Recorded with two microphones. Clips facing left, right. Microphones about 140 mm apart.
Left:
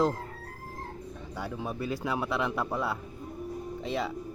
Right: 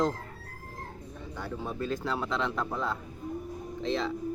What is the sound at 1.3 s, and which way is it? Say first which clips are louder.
Speech: left 1 dB; 10° left (ahead or behind).